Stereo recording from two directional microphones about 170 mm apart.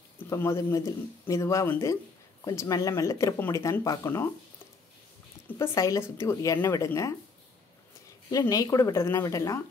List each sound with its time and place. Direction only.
0.2 s speech: 15° left (ahead or behind)
5.6 s speech: 20° left (ahead or behind)
8.3 s speech: 20° left (ahead or behind)